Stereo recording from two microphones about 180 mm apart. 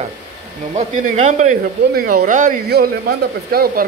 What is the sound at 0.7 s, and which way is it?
Speech, 40° right (ahead or behind).